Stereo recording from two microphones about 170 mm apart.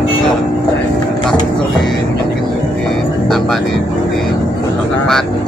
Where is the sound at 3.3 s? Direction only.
Centre (ahead or behind).